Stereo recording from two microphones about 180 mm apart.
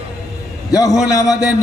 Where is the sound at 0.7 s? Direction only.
20° left (ahead or behind).